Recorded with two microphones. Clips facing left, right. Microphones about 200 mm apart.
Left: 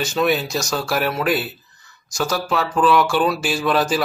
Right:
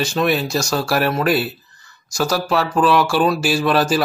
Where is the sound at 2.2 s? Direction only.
5° right (ahead or behind).